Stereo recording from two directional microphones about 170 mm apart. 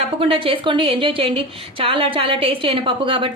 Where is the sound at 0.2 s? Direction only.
30° right (ahead or behind).